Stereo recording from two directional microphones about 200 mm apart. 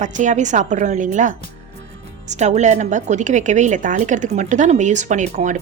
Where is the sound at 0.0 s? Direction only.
40° right (ahead or behind).